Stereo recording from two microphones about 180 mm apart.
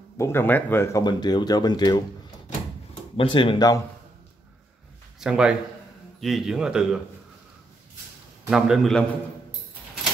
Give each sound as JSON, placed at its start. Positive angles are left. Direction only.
{"t": 0.2, "sound": "speech", "side_deg": 15}
{"t": 1.0, "sound": "speech", "side_deg": 25}
{"t": 3.2, "sound": "speech", "side_deg": 30}
{"t": 5.2, "sound": "speech", "side_deg": -5}
{"t": 8.5, "sound": "speech", "side_deg": 0}